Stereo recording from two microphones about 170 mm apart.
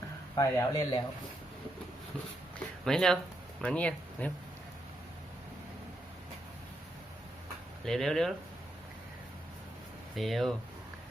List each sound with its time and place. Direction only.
0.3 s speech: 20° left (ahead or behind)
2.8 s speech: 5° left (ahead or behind)
7.9 s speech: centre (ahead or behind)
10.2 s speech: centre (ahead or behind)